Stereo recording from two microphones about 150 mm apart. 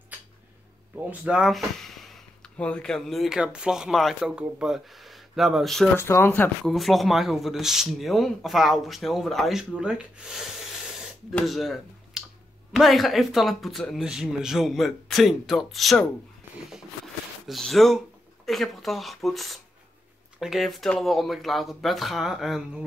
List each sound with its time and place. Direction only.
0.9 s speech: 10° right (ahead or behind)
5.9 s speech: 15° left (ahead or behind)
6.6 s speech: centre (ahead or behind)